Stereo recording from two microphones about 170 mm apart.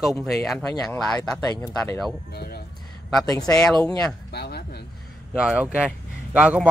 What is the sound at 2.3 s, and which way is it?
Speech, 70° left (ahead or behind).